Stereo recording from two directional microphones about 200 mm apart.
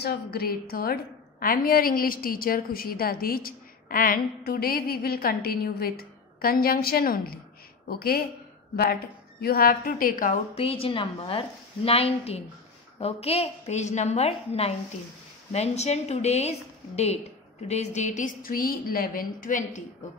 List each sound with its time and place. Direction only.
0.0 s a woman's voice: 50° left (ahead or behind)
9.4 s a woman's voice: 50° left (ahead or behind)
10.5 s a woman's voice: 30° left (ahead or behind)